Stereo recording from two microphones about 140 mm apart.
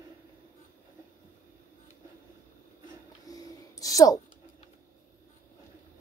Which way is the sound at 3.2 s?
25° left (ahead or behind).